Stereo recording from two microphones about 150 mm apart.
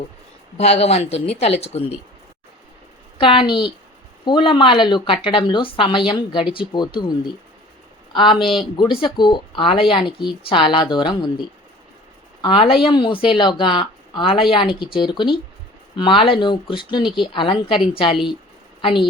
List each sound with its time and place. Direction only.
0.5 s speech: 45° left (ahead or behind)
3.2 s speech: 35° left (ahead or behind)
8.1 s speech: 30° left (ahead or behind)
8.4 s speech: centre (ahead or behind)
8.7 s a woman's voice: 30° left (ahead or behind)